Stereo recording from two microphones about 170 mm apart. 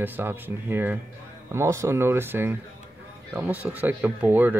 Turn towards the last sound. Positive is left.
turn(degrees=-10)  # may be behind; listen again after turning